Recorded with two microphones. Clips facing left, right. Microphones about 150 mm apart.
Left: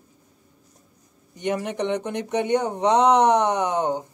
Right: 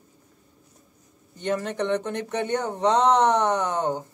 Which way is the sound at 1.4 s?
15° left (ahead or behind).